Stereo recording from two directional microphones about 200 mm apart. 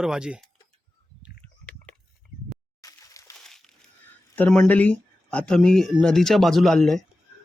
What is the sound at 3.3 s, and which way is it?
Crushing, centre (ahead or behind).